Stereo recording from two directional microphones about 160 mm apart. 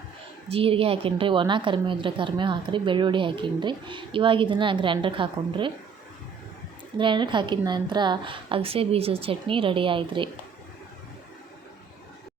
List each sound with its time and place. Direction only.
0.4 s a woman's voice: 35° right (ahead or behind)
7.0 s a woman's voice: 30° right (ahead or behind)